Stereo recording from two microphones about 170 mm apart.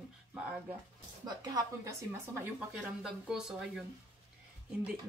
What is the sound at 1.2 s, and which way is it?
Speech, 25° right (ahead or behind).